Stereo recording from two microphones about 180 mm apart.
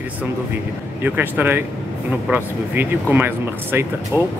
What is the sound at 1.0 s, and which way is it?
Speech, 10° right (ahead or behind).